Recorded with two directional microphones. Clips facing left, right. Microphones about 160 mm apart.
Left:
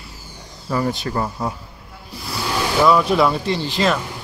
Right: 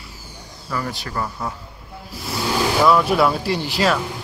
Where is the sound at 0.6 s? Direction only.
25° left (ahead or behind).